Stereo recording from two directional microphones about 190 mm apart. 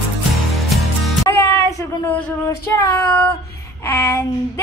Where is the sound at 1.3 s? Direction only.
15° left (ahead or behind).